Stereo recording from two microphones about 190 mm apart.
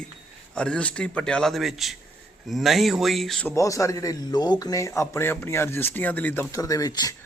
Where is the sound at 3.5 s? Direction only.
15° left (ahead or behind).